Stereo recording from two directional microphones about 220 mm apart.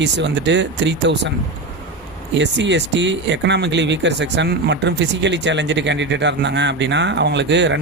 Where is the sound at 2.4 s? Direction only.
55° right (ahead or behind).